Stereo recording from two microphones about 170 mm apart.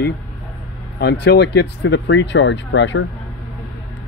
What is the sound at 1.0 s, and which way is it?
Speech, 85° left.